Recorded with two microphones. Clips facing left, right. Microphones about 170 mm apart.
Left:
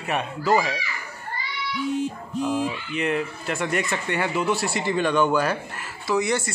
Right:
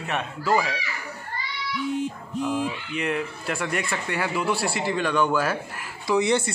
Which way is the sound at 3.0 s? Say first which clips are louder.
Left 2 dB; centre (ahead or behind).